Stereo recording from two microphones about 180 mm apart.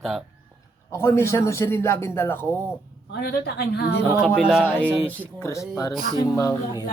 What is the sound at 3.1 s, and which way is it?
Speech, 60° left (ahead or behind).